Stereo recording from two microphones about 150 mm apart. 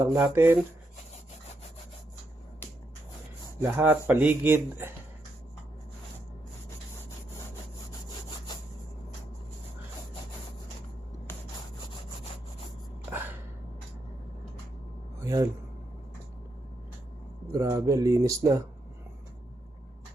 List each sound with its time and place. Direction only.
0.0 s speech: 20° right (ahead or behind)
3.6 s speech: 15° right (ahead or behind)
15.2 s a sound: 20° right (ahead or behind)
17.5 s speech: 20° right (ahead or behind)